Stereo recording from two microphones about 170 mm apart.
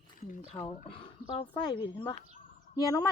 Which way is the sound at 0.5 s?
30° left (ahead or behind).